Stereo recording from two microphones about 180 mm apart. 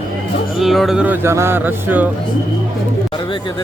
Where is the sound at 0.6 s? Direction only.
Centre (ahead or behind).